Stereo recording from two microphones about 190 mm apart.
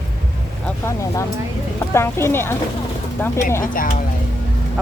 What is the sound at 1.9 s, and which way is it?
Speech, 10° left (ahead or behind).